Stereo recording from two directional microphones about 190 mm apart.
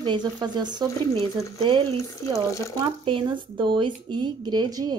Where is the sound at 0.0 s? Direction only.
25° right (ahead or behind).